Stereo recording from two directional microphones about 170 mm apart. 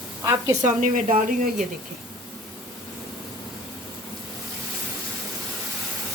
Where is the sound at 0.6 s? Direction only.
50° right (ahead or behind).